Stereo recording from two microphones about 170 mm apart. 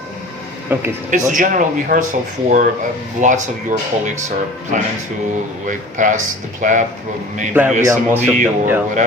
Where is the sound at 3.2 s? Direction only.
45° right (ahead or behind).